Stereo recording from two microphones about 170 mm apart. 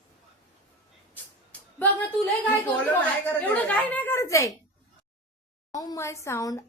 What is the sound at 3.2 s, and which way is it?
A woman's voice, 10° left (ahead or behind).